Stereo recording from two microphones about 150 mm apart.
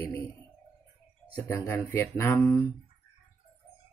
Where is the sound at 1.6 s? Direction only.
15° left (ahead or behind).